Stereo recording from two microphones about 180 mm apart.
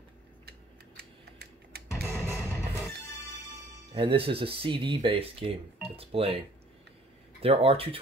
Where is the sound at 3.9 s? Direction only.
30° right (ahead or behind).